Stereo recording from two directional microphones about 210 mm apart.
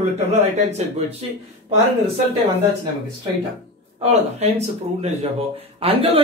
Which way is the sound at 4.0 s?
30° right (ahead or behind).